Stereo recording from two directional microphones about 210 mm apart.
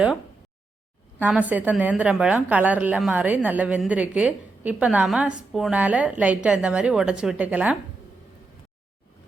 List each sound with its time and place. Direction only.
1.2 s a woman's voice: 5° right (ahead or behind)